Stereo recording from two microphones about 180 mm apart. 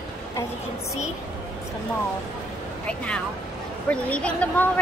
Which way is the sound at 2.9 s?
5° left (ahead or behind).